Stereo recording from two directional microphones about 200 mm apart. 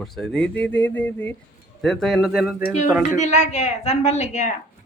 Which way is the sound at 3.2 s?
35° left (ahead or behind).